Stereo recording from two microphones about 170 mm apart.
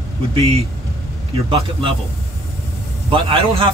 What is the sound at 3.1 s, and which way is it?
Speech, 30° right (ahead or behind).